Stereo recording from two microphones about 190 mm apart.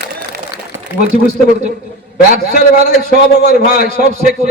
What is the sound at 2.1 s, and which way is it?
A man's voice, 50° left (ahead or behind).